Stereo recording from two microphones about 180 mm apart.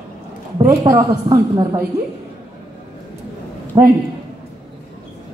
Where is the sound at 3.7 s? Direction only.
25° right (ahead or behind).